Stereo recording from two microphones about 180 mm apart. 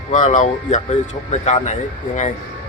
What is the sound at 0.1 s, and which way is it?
Speech, 40° left (ahead or behind).